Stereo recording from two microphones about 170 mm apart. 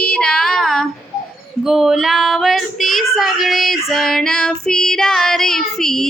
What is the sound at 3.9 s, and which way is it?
Child singing, centre (ahead or behind).